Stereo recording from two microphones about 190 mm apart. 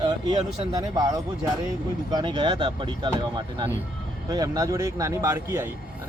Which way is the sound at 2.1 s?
25° right (ahead or behind).